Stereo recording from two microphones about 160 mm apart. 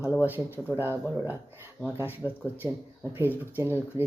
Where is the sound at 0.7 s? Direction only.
15° right (ahead or behind).